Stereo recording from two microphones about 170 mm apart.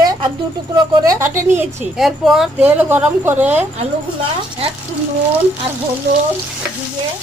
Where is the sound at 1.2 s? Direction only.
15° right (ahead or behind).